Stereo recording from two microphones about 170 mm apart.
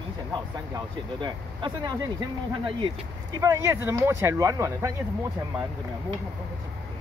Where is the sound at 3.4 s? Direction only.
15° right (ahead or behind).